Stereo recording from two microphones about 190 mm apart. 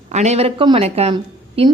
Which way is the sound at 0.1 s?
35° right (ahead or behind).